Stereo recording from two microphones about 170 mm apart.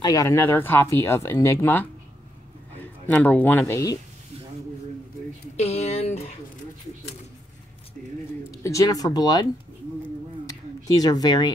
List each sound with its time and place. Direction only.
0.0 s a man's voice: 20° left (ahead or behind)
5.6 s speech: 40° left (ahead or behind)
8.6 s speech: 20° left (ahead or behind)
11.0 s speech: 20° left (ahead or behind)